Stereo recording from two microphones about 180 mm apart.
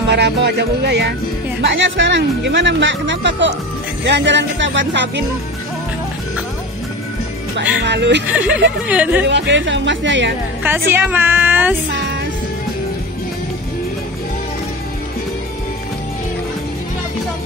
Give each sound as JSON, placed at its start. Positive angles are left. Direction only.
{"t": 0.1, "sound": "music", "side_deg": -65}
{"t": 1.6, "sound": "speech", "side_deg": -90}
{"t": 4.0, "sound": "music", "side_deg": -75}
{"t": 7.5, "sound": "music", "side_deg": -80}
{"t": 8.3, "sound": "a woman's voice", "side_deg": -10}
{"t": 9.3, "sound": "music", "side_deg": -85}
{"t": 10.6, "sound": "a woman's voice", "side_deg": -10}